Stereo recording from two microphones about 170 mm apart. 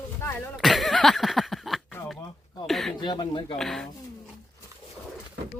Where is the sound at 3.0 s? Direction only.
25° left (ahead or behind).